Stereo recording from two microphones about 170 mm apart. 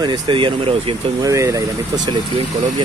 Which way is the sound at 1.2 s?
20° right (ahead or behind).